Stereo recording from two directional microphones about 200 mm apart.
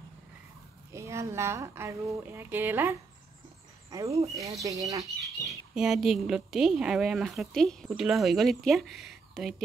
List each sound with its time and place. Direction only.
0.9 s speech: 15° right (ahead or behind)
5.8 s a woman's voice: centre (ahead or behind)